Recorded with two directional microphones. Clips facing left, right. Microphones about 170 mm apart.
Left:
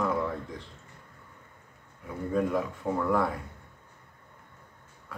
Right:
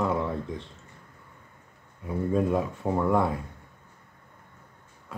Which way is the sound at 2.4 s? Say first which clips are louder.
Even; 25° right (ahead or behind).